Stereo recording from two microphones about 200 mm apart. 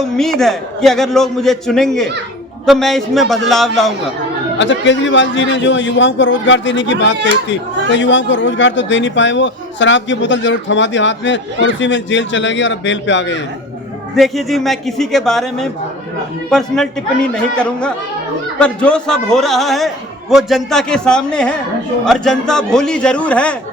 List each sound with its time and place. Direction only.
0.0 s a man's voice: centre (ahead or behind)
4.5 s a man's voice: 65° left (ahead or behind)
14.2 s a man's voice: centre (ahead or behind)